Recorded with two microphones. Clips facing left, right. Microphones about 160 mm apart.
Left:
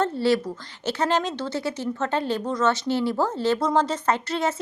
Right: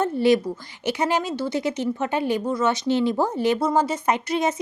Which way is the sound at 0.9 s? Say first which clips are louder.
Right 1 dB; 10° right (ahead or behind).